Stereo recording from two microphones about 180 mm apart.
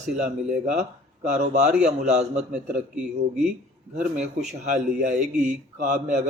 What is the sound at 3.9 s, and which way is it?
Speech, 40° right (ahead or behind).